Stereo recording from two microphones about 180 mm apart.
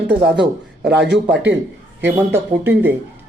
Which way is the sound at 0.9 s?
65° right (ahead or behind).